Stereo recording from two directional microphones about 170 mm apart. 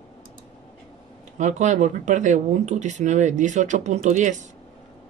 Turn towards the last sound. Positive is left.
turn(degrees=-45)  # may be behind; listen again after turning